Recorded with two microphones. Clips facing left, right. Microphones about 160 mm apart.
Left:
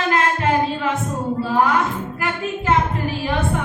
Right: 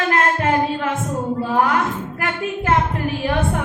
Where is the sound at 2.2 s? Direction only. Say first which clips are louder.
Right 1 dB; 55° right (ahead or behind).